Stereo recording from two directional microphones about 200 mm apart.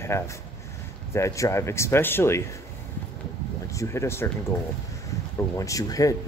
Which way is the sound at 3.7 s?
15° left (ahead or behind).